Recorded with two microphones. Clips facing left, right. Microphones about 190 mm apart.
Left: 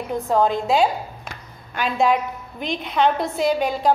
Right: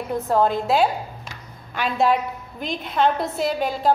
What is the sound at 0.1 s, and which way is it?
A woman's voice, 5° right (ahead or behind).